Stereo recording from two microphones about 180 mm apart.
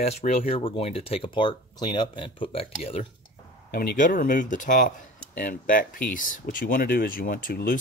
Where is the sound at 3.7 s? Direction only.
50° left (ahead or behind).